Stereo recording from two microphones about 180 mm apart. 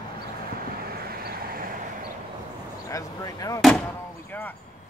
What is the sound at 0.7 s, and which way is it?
Vehicle, 55° right (ahead or behind).